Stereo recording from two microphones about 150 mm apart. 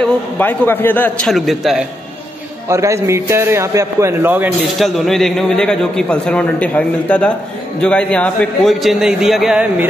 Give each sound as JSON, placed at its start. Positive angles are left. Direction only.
{"t": 0.0, "sound": "a man's voice", "side_deg": 10}
{"t": 2.7, "sound": "a man's voice", "side_deg": -20}
{"t": 4.6, "sound": "a man's voice", "side_deg": 0}